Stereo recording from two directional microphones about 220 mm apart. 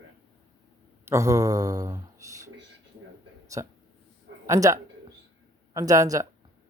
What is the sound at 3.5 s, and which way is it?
Speech, 15° right (ahead or behind).